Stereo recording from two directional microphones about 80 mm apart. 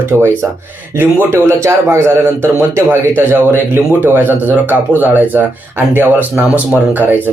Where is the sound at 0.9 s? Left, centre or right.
Right.